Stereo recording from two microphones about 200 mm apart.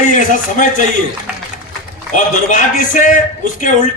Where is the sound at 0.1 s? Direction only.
40° left (ahead or behind).